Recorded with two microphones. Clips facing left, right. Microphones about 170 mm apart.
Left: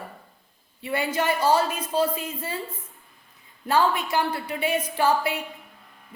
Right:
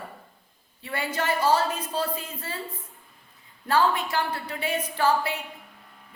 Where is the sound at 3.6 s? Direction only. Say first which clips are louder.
Left 1 dB; 15° left (ahead or behind).